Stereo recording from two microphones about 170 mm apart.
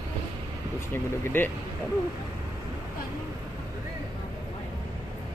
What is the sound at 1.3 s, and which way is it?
Speech, 15° left (ahead or behind).